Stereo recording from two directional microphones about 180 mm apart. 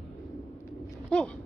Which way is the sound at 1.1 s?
5° left (ahead or behind).